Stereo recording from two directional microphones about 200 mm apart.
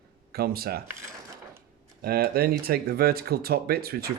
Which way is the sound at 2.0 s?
50° right (ahead or behind).